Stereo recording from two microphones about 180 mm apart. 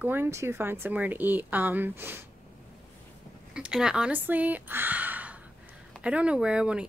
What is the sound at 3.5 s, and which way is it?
Speech, 5° right (ahead or behind).